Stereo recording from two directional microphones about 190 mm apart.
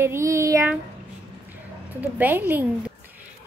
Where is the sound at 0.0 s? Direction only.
15° right (ahead or behind).